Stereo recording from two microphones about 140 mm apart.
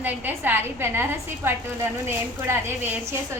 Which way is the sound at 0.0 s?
15° right (ahead or behind).